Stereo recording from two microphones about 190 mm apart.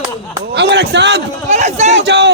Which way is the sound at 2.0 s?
65° right (ahead or behind).